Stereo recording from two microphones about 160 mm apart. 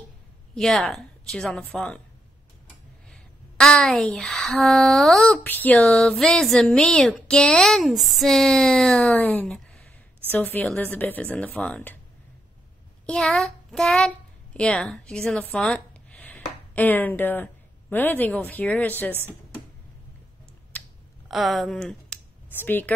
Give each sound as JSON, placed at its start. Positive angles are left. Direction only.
{"t": 0.6, "sound": "speech", "side_deg": 0}
{"t": 3.1, "sound": "speech", "side_deg": 5}
{"t": 5.4, "sound": "speech", "side_deg": 10}
{"t": 13.0, "sound": "a child's voice", "side_deg": 5}
{"t": 20.7, "sound": "a sound", "side_deg": 10}
{"t": 21.3, "sound": "speech", "side_deg": 0}